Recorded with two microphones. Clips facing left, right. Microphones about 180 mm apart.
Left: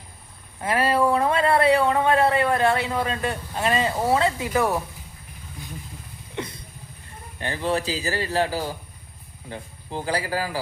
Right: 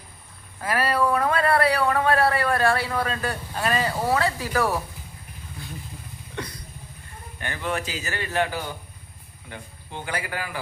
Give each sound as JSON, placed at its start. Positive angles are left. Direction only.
{"t": 0.6, "sound": "a sound", "side_deg": 25}
{"t": 6.3, "sound": "vehicle", "side_deg": 25}
{"t": 7.3, "sound": "a man's voice", "side_deg": 30}